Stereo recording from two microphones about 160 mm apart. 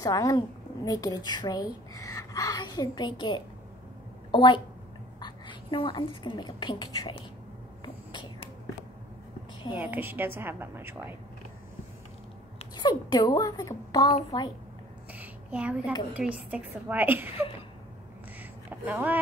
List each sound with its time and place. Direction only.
0.0 s a woman's voice: 20° left (ahead or behind)
7.8 s a sound: 30° left (ahead or behind)
9.8 s a woman's voice: 10° right (ahead or behind)
12.7 s a woman's voice: 25° left (ahead or behind)
15.1 s a sound: 10° right (ahead or behind)
16.1 s a woman's voice: 10° right (ahead or behind)
18.7 s speech: 10° right (ahead or behind)